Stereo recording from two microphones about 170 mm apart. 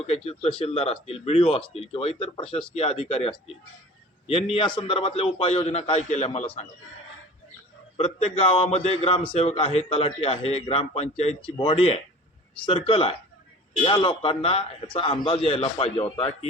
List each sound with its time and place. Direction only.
0.0 s a man's voice: 35° left (ahead or behind)
7.9 s a man's voice: 35° left (ahead or behind)